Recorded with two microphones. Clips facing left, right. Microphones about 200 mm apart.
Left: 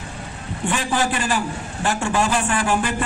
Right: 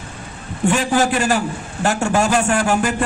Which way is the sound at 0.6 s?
45° right (ahead or behind).